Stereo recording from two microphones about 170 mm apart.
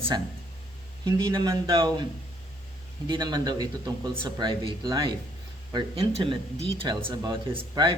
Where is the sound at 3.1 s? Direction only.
25° right (ahead or behind).